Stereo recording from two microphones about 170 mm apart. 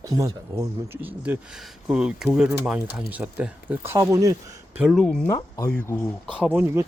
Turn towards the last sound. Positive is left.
turn(degrees=-10)  # may be behind; listen again after turning